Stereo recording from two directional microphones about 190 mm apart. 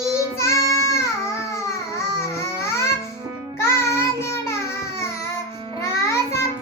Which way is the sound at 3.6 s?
15° left (ahead or behind).